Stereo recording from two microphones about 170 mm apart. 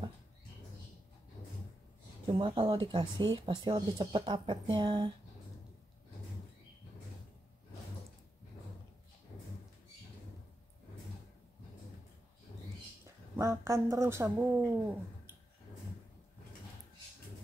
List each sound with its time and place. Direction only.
2.2 s speech: 30° right (ahead or behind)
13.0 s speech: 15° right (ahead or behind)